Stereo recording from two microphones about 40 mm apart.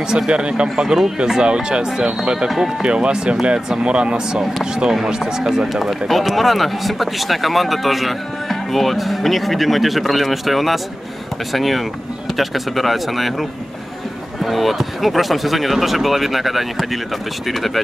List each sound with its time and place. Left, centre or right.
0.3 s speech: right
0.8 s speech: centre
5.7 s speech: centre